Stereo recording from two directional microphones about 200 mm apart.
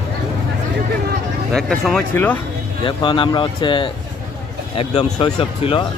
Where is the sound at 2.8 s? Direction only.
25° left (ahead or behind).